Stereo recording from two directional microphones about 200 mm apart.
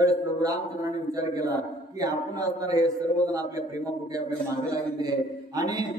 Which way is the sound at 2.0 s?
20° right (ahead or behind).